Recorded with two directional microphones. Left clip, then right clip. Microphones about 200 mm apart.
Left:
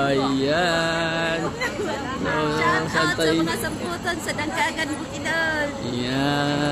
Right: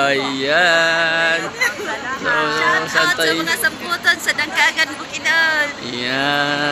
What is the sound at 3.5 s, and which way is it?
Speech, 15° left (ahead or behind).